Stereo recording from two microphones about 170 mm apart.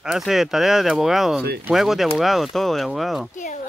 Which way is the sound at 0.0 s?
Centre (ahead or behind).